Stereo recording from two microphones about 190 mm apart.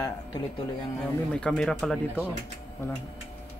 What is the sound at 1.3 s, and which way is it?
Speech, 5° left (ahead or behind).